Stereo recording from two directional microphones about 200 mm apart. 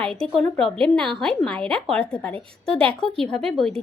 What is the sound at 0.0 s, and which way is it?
A woman's voice, 5° left (ahead or behind).